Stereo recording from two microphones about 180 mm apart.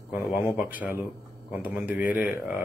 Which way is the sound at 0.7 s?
10° right (ahead or behind).